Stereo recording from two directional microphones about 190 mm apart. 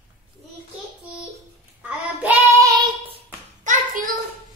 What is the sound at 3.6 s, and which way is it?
Child singing, 45° right (ahead or behind).